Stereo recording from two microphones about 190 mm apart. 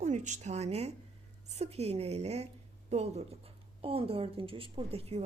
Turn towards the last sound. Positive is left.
turn(degrees=-30)  # may be behind; listen again after turning